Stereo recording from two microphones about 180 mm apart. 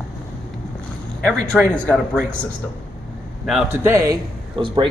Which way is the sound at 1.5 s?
5° left (ahead or behind).